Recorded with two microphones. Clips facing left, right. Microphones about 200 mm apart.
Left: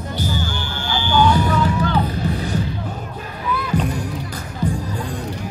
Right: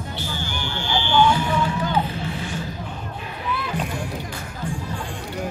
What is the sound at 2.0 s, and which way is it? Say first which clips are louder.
Music: left 5 dB; 40° left (ahead or behind).